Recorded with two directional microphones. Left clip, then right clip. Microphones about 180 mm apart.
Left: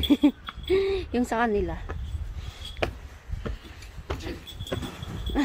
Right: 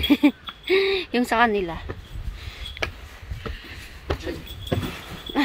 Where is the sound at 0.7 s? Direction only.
5° left (ahead or behind).